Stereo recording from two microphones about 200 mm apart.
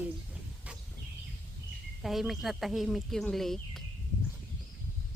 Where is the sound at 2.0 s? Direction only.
Centre (ahead or behind).